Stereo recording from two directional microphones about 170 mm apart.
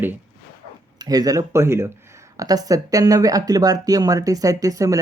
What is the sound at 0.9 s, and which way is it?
Speech, 20° right (ahead or behind).